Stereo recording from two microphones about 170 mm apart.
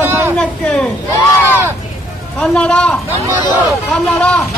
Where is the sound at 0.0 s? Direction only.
15° right (ahead or behind).